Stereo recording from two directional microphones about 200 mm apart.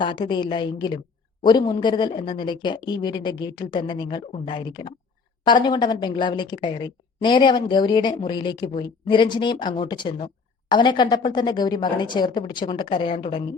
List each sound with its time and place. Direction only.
0.0 s speech: 25° left (ahead or behind)